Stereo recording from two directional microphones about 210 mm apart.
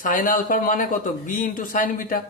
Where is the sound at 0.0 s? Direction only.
40° left (ahead or behind).